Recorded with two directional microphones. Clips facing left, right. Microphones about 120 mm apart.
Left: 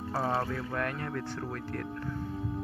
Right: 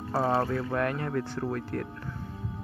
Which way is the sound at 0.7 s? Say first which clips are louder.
Right 5 dB; 25° right (ahead or behind).